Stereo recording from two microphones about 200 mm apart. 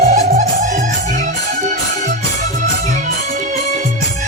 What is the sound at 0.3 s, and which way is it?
Music, 45° right (ahead or behind).